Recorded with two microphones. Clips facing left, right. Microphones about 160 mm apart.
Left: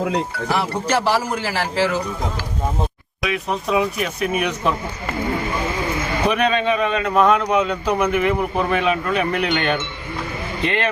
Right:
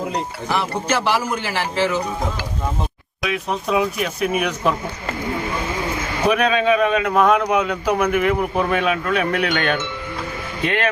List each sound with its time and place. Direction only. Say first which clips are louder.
0.9 s a man's voice: left 1 dB; 35° left (ahead or behind)
3.2 s a man's voice: even; centre (ahead or behind)
6.2 s a man's voice: right 2 dB; 5° right (ahead or behind)